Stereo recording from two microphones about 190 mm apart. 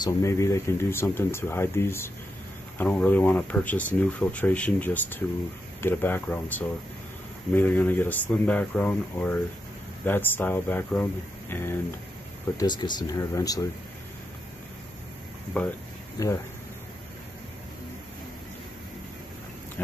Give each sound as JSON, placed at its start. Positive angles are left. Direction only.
{"t": 0.0, "sound": "speech", "side_deg": 15}
{"t": 7.5, "sound": "speech", "side_deg": 10}
{"t": 12.5, "sound": "speech", "side_deg": 20}
{"t": 15.5, "sound": "speech", "side_deg": 10}